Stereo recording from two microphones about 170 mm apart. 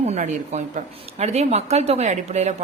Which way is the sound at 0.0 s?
40° right (ahead or behind).